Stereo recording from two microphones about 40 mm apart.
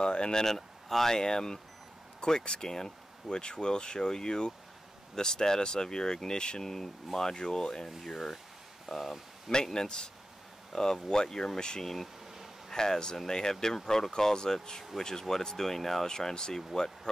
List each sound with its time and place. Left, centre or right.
0.0 s speech: left; by 9.2 s centre
9.5 s speech: centre